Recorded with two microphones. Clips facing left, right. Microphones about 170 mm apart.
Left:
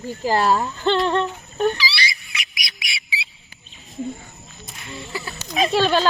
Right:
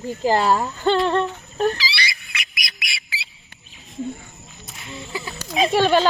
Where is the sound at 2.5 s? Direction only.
Centre (ahead or behind).